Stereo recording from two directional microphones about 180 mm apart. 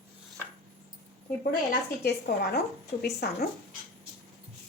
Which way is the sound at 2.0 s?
60° left (ahead or behind).